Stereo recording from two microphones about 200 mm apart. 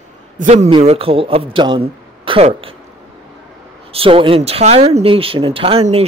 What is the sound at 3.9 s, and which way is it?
Speech, 25° right (ahead or behind).